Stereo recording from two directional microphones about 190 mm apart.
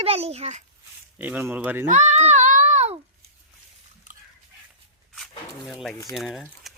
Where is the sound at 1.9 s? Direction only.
35° right (ahead or behind).